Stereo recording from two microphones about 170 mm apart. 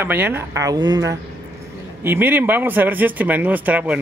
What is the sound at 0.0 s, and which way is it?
Speech, 10° right (ahead or behind).